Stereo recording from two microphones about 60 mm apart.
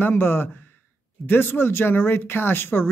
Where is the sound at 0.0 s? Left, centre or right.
Left.